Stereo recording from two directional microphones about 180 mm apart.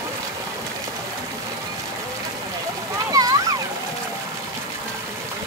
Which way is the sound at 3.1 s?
20° right (ahead or behind).